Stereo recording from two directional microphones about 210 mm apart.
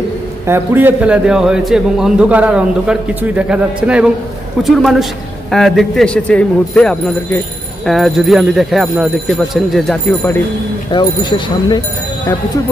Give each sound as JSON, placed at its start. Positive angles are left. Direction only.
{"t": 0.5, "sound": "speech", "side_deg": -10}
{"t": 10.9, "sound": "speech", "side_deg": 20}